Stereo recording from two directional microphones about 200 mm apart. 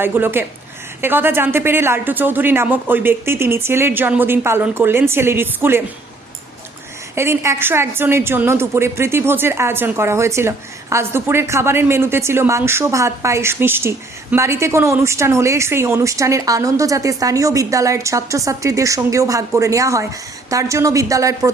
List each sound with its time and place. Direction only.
0.0 s a woman's voice: 10° right (ahead or behind)
7.2 s a woman's voice: 10° right (ahead or behind)